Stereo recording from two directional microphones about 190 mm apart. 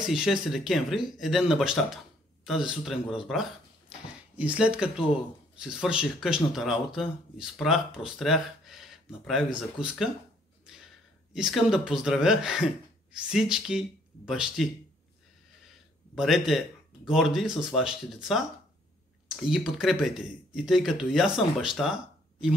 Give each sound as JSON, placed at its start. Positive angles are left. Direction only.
{"t": 0.1, "sound": "speech", "side_deg": 0}
{"t": 11.3, "sound": "speech", "side_deg": -5}
{"t": 16.2, "sound": "speech", "side_deg": 0}